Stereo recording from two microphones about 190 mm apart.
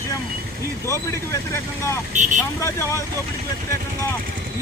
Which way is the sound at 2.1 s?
40° right (ahead or behind).